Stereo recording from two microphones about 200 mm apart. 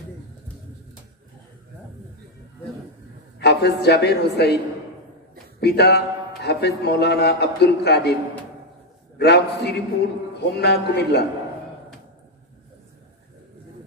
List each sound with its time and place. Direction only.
3.3 s a woman's voice: 55° left (ahead or behind)
5.6 s a man's voice: 55° left (ahead or behind)
9.2 s a man's voice: 55° left (ahead or behind)